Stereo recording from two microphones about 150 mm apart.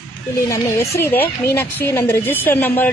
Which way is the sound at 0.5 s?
15° left (ahead or behind).